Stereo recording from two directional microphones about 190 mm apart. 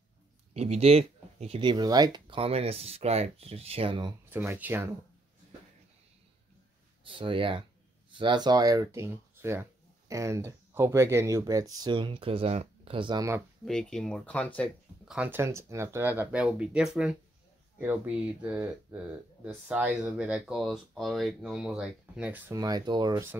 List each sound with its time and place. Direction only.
0.6 s speech: 35° right (ahead or behind)
4.3 s speech: 10° right (ahead or behind)
7.1 s speech: 25° right (ahead or behind)
13.7 s speech: 5° left (ahead or behind)
15.1 s speech: 10° right (ahead or behind)
22.5 s speech: 20° right (ahead or behind)